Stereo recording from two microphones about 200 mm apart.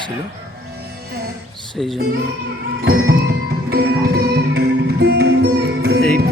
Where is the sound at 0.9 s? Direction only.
55° right (ahead or behind).